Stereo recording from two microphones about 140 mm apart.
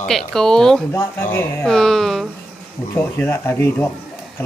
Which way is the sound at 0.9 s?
15° left (ahead or behind).